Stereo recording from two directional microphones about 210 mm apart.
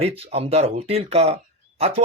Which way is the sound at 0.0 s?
30° right (ahead or behind).